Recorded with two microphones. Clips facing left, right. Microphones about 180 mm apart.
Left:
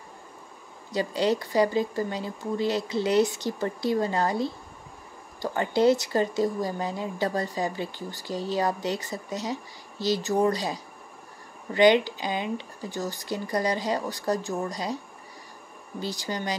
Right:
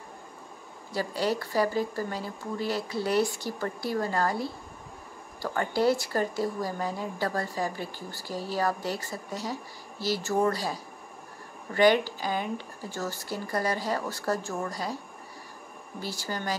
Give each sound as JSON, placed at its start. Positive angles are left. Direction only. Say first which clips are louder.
{"t": 0.9, "sound": "speech", "louder": "left 4 dB", "side_deg": 20}
{"t": 16.0, "sound": "speech", "louder": "left 3 dB", "side_deg": 20}